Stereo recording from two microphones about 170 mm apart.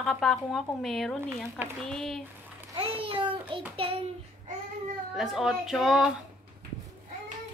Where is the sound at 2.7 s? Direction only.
30° right (ahead or behind).